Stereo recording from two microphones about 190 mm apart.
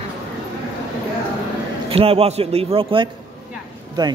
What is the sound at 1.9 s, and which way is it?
A man's voice, 30° right (ahead or behind).